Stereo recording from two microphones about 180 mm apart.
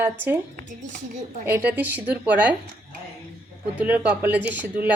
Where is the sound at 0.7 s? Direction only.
45° right (ahead or behind).